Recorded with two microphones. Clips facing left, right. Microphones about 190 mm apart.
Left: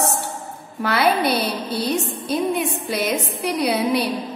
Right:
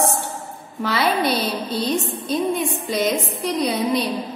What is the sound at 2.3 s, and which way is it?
Speech, 65° left (ahead or behind).